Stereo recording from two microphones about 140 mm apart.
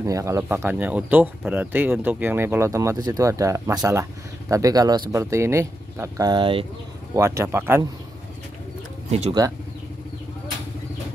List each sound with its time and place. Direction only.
0.0 s speech: 20° right (ahead or behind)
7.2 s speech: 20° right (ahead or behind)